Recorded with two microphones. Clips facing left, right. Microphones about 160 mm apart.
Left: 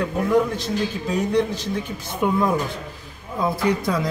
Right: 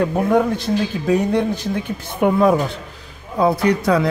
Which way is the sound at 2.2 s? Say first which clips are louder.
Right 6 dB; 65° right (ahead or behind).